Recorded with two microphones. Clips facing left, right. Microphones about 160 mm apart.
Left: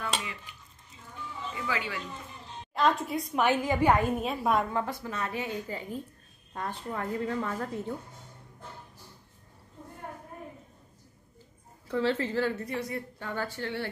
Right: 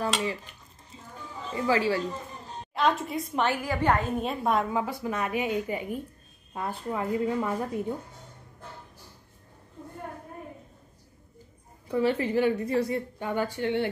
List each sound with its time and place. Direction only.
0.0 s dishes: 35° right (ahead or behind)
1.1 s a sound: 40° right (ahead or behind)
2.7 s a woman's voice: centre (ahead or behind)
3.4 s a woman's voice: 20° left (ahead or behind); by 7.8 s 15° right (ahead or behind)
11.9 s a woman's voice: 15° right (ahead or behind)
12.6 s speech: 30° right (ahead or behind)
13.2 s a woman's voice: 15° right (ahead or behind)